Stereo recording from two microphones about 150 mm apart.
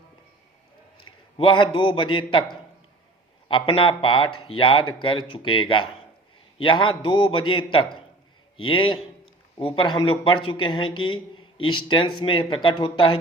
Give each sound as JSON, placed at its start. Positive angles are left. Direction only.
{"t": 1.0, "sound": "a man's voice", "side_deg": 35}